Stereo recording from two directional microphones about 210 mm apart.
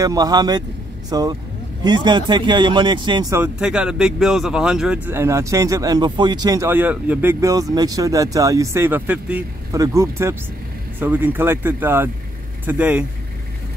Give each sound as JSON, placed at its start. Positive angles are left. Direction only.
{"t": 0.0, "sound": "speech", "side_deg": -15}
{"t": 3.5, "sound": "speech", "side_deg": -5}